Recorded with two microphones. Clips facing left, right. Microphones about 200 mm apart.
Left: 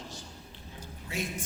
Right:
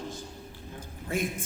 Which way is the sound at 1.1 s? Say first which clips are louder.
Right 6 dB; 50° right (ahead or behind).